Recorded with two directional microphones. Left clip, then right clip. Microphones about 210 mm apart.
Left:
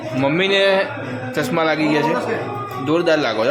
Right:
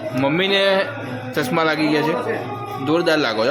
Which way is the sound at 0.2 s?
5° right (ahead or behind).